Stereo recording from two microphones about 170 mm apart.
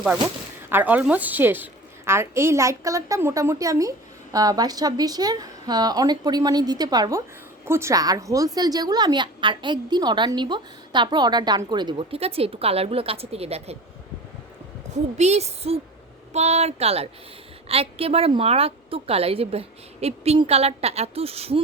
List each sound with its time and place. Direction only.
0.7 s a woman's voice: 10° right (ahead or behind); by 13.7 s 35° right (ahead or behind)
14.8 s a sound: 45° right (ahead or behind)
15.2 s a woman's voice: 40° right (ahead or behind)